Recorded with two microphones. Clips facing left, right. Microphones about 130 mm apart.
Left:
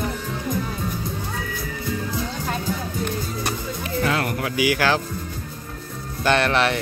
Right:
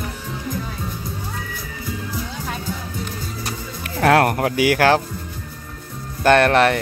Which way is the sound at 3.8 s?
65° right (ahead or behind).